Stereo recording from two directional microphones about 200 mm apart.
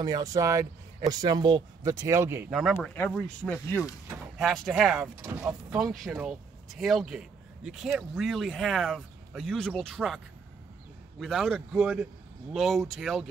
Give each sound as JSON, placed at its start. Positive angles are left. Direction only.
{"t": 0.0, "sound": "speech", "side_deg": -20}
{"t": 2.5, "sound": "speech", "side_deg": 0}
{"t": 4.4, "sound": "speech", "side_deg": 0}